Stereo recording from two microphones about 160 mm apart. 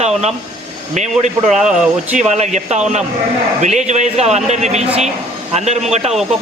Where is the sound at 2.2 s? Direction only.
45° right (ahead or behind).